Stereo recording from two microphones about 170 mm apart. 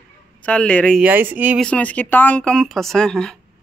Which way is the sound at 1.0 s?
10° right (ahead or behind).